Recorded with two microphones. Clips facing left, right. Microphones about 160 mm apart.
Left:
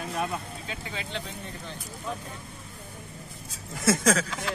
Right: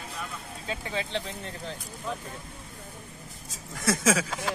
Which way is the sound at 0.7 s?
35° right (ahead or behind).